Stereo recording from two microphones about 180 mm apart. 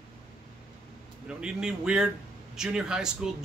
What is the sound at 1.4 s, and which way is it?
Speech, 5° right (ahead or behind).